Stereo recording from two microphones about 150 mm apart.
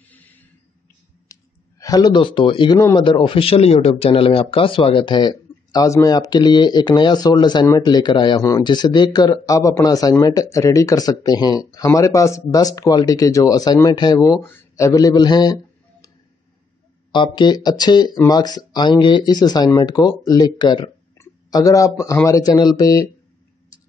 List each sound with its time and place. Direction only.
0.1 s a sound: 10° left (ahead or behind)
1.3 s speech: 25° left (ahead or behind)
17.1 s speech: 30° left (ahead or behind)